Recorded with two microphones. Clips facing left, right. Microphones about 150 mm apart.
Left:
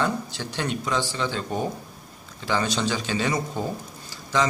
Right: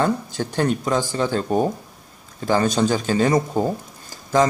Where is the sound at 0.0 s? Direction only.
45° right (ahead or behind).